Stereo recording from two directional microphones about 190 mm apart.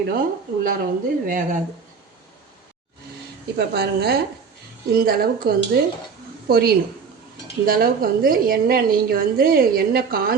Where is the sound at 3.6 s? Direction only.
55° right (ahead or behind).